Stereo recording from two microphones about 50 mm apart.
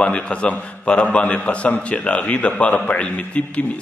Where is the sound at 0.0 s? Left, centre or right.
Left.